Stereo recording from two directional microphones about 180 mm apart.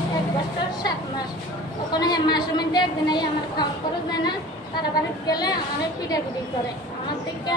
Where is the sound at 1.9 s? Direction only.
25° left (ahead or behind).